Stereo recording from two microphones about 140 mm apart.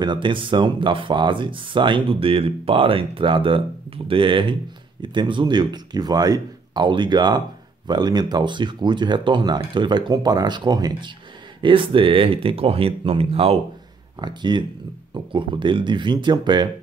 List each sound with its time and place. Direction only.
0.0 s speech: 35° right (ahead or behind)
14.2 s speech: 30° right (ahead or behind)